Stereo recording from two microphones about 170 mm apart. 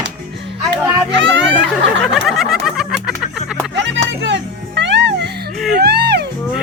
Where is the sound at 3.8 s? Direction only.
90° right.